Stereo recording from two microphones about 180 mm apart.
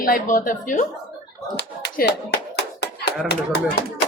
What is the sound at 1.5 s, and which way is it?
Clapping, 65° left (ahead or behind).